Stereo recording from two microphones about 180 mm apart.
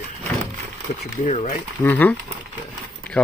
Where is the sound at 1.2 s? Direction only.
40° left (ahead or behind).